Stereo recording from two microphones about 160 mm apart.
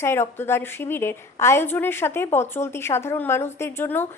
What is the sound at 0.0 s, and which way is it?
A woman's voice, 15° left (ahead or behind).